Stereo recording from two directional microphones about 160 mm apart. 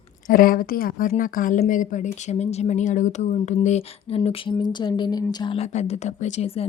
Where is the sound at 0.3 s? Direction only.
60° left (ahead or behind); by 4.5 s 35° left (ahead or behind).